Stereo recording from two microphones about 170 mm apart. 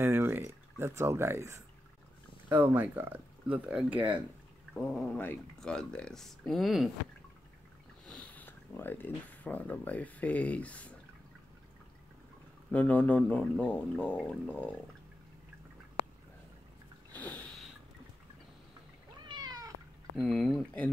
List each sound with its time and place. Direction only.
0.0 s speech: 15° right (ahead or behind)
4.7 s speech: 5° left (ahead or behind)
8.1 s speech: 10° left (ahead or behind)
12.7 s speech: 10° left (ahead or behind)
17.1 s sniff: 10° left (ahead or behind)
19.2 s cat: 25° right (ahead or behind)
20.2 s speech: centre (ahead or behind)